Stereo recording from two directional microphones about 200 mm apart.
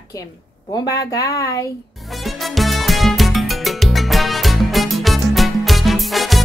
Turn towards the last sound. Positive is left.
turn(degrees=0)  # may be behind; listen again after turning